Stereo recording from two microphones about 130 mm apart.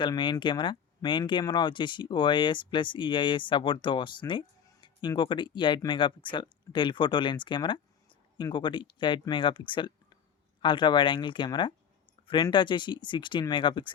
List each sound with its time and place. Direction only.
0.0 s speech: 40° left (ahead or behind)